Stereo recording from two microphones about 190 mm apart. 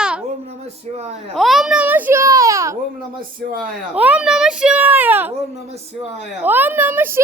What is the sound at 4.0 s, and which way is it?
A child's voice, 5° right (ahead or behind).